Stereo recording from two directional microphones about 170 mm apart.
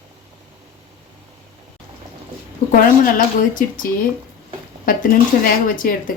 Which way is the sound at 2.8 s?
55° left (ahead or behind).